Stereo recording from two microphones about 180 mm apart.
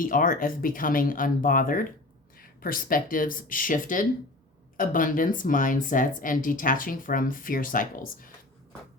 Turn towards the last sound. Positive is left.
turn(degrees=50)  # may be behind; listen again after turning